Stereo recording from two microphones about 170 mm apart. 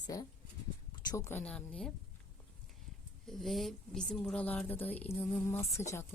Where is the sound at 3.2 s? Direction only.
Centre (ahead or behind).